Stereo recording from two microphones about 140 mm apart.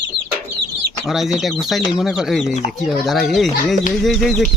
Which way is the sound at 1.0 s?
Centre (ahead or behind).